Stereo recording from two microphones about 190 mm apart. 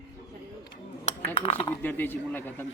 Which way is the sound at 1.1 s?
35° left (ahead or behind).